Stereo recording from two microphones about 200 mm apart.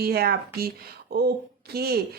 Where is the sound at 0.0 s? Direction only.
50° right (ahead or behind).